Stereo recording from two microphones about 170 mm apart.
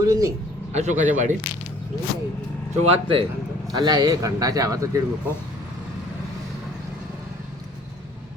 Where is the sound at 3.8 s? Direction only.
20° right (ahead or behind).